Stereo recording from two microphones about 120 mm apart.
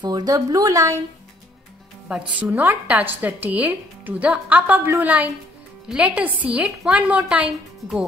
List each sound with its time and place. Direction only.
0.0 s a woman's voice: 30° right (ahead or behind)
2.4 s speech: 15° right (ahead or behind)